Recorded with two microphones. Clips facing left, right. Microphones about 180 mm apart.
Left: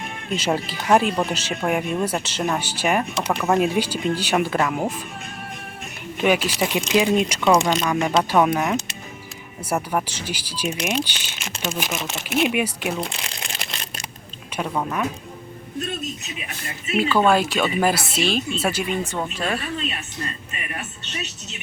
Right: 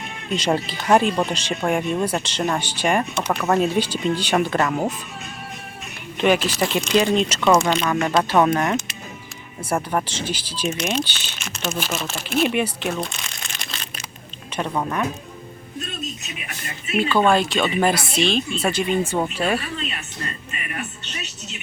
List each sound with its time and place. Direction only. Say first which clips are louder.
0.3 s speech: right 2 dB; 5° left (ahead or behind)
6.1 s speech: right 1 dB; 10° left (ahead or behind)
7.6 s speech: right 1 dB; centre (ahead or behind)
7.9 s speech: even; 10° left (ahead or behind)
12.5 s speech: right 1 dB; 10° left (ahead or behind)
13.1 s speech: left 2 dB; 30° left (ahead or behind)
13.5 s a sound: left 2 dB; 30° left (ahead or behind)
14.5 s speech: right 1 dB; 5° left (ahead or behind)
17.0 s speech: even; 5° left (ahead or behind)
19.0 s speech: right 4 dB; 10° right (ahead or behind)